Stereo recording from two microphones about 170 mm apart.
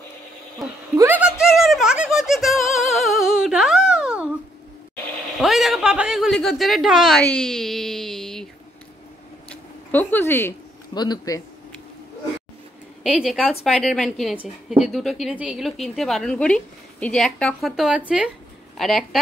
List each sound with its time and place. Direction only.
0.9 s giggle: 10° right (ahead or behind)
5.4 s a sound: centre (ahead or behind)
7.2 s speech: 5° left (ahead or behind)
9.5 s a sound: 10° left (ahead or behind)
11.0 s speech: 20° left (ahead or behind)
13.0 s a woman's voice: 5° right (ahead or behind)